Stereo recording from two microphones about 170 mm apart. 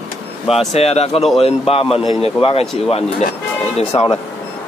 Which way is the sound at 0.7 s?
40° left (ahead or behind).